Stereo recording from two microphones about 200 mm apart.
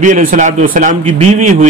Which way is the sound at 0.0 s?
40° right (ahead or behind).